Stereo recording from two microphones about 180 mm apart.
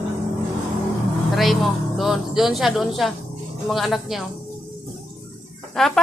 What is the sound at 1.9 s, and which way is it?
Speech, centre (ahead or behind).